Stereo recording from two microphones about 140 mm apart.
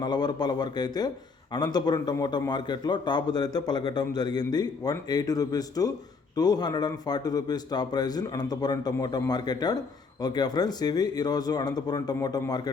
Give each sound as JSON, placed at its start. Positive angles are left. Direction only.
{"t": 0.0, "sound": "a man's voice", "side_deg": 30}